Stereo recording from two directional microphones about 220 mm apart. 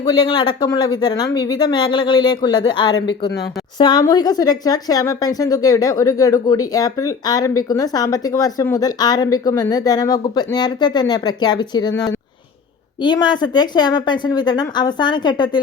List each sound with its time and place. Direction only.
0.0 s a woman's voice: 20° left (ahead or behind)
13.0 s speech: 20° left (ahead or behind)